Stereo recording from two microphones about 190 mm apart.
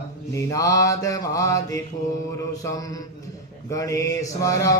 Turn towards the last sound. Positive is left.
turn(degrees=15)  # may be behind; listen again after turning